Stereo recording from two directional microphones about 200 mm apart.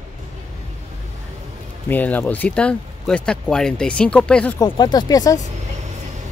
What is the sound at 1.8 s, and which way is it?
Speech, 10° left (ahead or behind).